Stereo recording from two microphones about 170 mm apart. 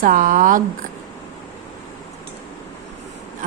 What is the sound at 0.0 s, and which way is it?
Speech, 55° right (ahead or behind).